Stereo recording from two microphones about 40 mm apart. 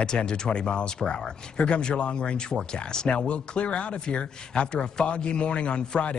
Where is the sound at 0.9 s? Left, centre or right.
Centre.